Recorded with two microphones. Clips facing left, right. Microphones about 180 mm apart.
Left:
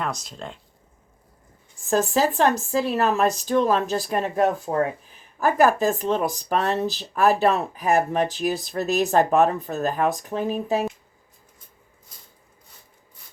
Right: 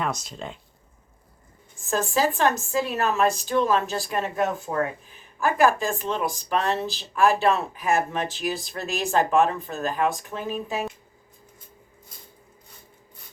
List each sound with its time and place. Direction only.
0.0 s speech: centre (ahead or behind)
1.9 s speech: 40° left (ahead or behind)